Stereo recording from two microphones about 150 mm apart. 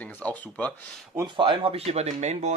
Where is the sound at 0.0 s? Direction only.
10° left (ahead or behind).